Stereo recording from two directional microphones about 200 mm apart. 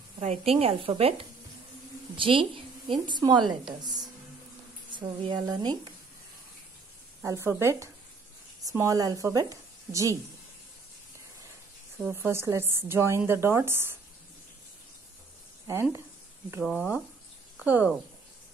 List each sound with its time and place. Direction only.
0.2 s a woman's voice: 30° right (ahead or behind)
2.1 s a woman's voice: 25° right (ahead or behind)
7.2 s a woman's voice: 10° right (ahead or behind)
12.0 s a woman's voice: 10° right (ahead or behind)
15.6 s speech: 15° right (ahead or behind)